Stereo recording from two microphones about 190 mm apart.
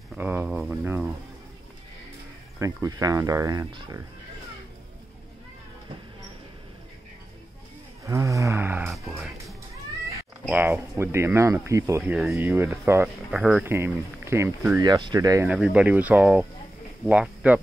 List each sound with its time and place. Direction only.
0.1 s a sound: 10° right (ahead or behind)
2.6 s speech: 15° right (ahead or behind)
8.0 s wild animals: 15° right (ahead or behind)
9.1 s music: 5° right (ahead or behind)
10.4 s speech: 10° right (ahead or behind)
15.4 s speech: 5° right (ahead or behind)